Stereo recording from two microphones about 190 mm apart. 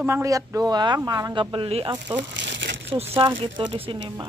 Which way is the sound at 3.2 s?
25° right (ahead or behind).